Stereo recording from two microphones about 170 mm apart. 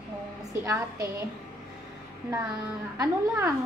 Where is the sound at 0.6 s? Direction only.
15° right (ahead or behind).